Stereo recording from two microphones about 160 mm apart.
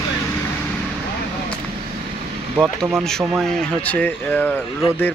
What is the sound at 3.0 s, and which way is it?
Speech, 5° left (ahead or behind).